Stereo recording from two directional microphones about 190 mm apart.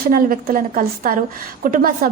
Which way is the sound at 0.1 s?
50° right (ahead or behind).